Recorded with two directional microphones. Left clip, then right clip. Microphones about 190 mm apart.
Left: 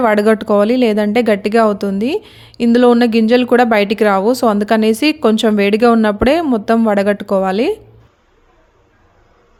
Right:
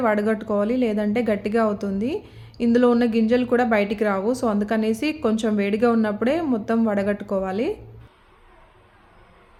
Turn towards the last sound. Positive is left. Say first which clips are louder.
# left 10 dB
turn(degrees=55)  # may be behind; listen again after turning